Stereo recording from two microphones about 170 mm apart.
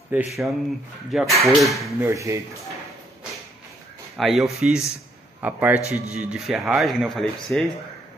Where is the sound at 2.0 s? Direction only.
20° right (ahead or behind).